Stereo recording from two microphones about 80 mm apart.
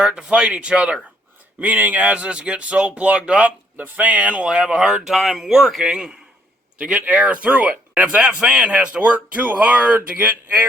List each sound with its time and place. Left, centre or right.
0.0 s speech: centre